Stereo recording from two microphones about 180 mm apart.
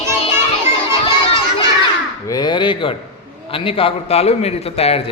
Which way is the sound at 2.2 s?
20° left (ahead or behind).